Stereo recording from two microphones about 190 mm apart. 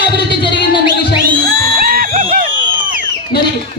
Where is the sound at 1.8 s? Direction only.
50° right (ahead or behind).